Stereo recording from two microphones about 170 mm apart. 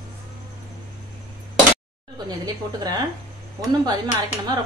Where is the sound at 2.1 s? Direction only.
25° right (ahead or behind).